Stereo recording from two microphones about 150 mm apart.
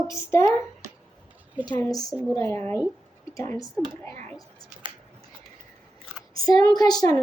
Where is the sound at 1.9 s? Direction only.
25° left (ahead or behind).